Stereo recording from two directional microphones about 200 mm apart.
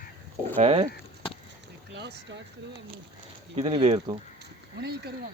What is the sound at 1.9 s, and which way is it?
Speech, 60° right (ahead or behind).